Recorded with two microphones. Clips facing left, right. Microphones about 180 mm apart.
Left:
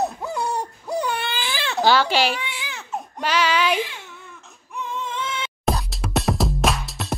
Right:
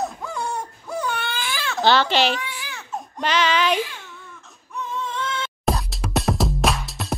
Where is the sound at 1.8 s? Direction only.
10° left (ahead or behind).